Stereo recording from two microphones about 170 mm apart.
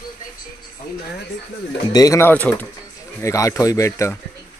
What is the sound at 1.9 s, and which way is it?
Speech, 20° left (ahead or behind).